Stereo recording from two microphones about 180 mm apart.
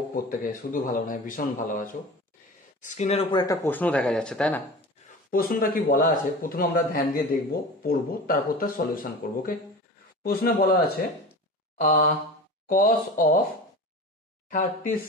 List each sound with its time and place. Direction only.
0.1 s a man's voice: 50° left (ahead or behind)
2.8 s speech: 40° left (ahead or behind)
3.3 s speech: 15° left (ahead or behind)
5.3 s a man's voice: 55° left (ahead or behind)
10.2 s a man's voice: 55° left (ahead or behind)
14.5 s a man's voice: 50° left (ahead or behind)